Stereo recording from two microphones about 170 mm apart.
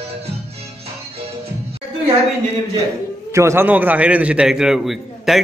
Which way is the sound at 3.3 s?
15° right (ahead or behind).